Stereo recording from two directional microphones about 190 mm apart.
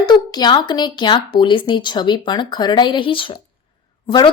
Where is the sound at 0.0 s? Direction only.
20° left (ahead or behind).